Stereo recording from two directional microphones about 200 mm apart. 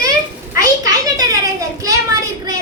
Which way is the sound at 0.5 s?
15° right (ahead or behind).